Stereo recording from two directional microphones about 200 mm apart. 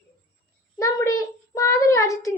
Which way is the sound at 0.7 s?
15° left (ahead or behind).